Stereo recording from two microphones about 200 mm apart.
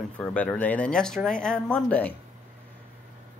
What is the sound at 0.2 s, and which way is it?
Speech, 5° left (ahead or behind).